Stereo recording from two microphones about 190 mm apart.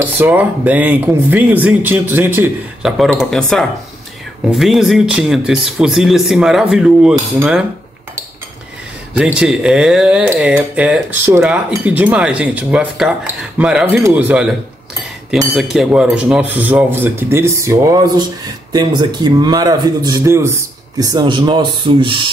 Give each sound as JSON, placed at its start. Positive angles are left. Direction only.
{"t": 0.0, "sound": "speech", "side_deg": -10}
{"t": 9.1, "sound": "speech", "side_deg": -5}
{"t": 15.5, "sound": "a man's voice", "side_deg": 0}